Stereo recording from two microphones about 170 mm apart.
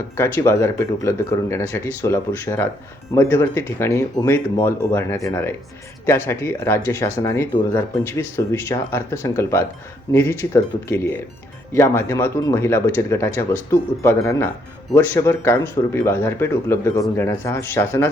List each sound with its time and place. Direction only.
0.2 s speech: 15° left (ahead or behind)